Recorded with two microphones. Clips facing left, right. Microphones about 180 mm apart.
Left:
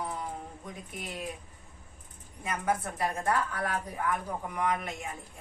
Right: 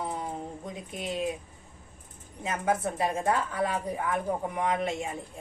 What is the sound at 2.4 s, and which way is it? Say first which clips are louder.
A woman's voice: right 3 dB; 20° right (ahead or behind).